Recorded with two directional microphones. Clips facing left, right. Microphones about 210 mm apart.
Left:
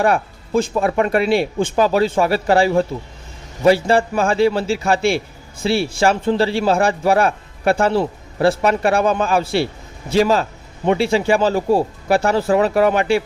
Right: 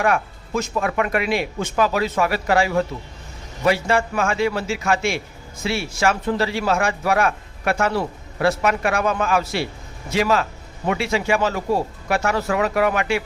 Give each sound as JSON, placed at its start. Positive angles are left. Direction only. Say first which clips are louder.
{"t": 0.0, "sound": "a man's voice", "louder": "left 3 dB", "side_deg": 30}